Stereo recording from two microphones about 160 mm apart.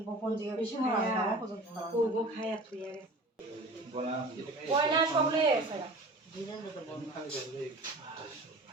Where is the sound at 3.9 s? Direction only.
40° right (ahead or behind).